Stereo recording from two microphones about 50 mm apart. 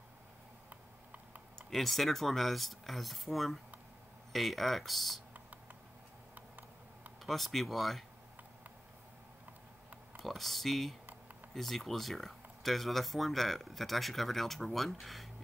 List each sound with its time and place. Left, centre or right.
0.7 s tick: right
1.7 s speech: centre
7.2 s speech: centre
10.1 s speech: centre